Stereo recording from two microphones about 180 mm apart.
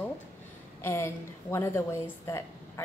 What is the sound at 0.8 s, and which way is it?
A woman's voice, 15° left (ahead or behind).